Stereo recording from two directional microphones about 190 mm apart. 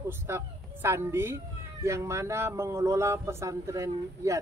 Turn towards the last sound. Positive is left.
turn(degrees=-15)  # may be behind; listen again after turning